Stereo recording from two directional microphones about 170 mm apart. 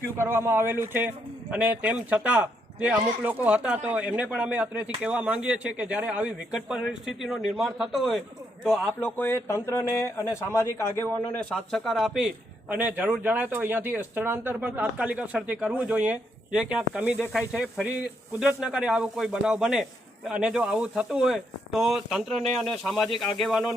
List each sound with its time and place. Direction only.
0.2 s a man's voice: 15° right (ahead or behind); by 11.1 s 15° left (ahead or behind)
11.5 s a man's voice: centre (ahead or behind)